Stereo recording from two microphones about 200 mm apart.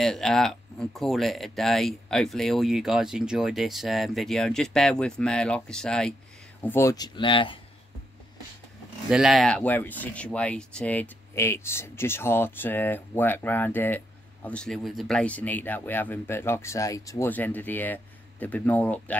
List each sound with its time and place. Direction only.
0.0 s speech: centre (ahead or behind); by 7.6 s 25° left (ahead or behind)
9.1 s speech: centre (ahead or behind)